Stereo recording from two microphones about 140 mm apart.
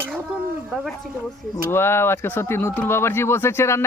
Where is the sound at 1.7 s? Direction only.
15° left (ahead or behind).